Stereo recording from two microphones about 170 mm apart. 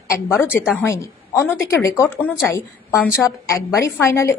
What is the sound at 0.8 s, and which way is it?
Speech, 15° left (ahead or behind).